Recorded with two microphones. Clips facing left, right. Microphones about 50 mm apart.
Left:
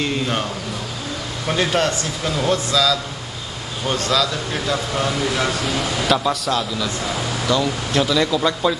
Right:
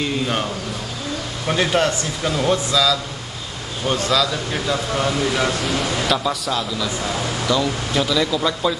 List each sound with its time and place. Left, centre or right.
0.0 s speech: centre
1.5 s speech: centre
4.1 s speech: centre